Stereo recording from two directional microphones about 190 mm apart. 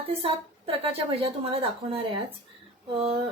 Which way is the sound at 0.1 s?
30° right (ahead or behind).